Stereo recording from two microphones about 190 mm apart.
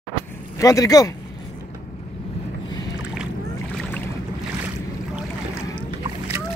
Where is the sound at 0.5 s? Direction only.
15° left (ahead or behind).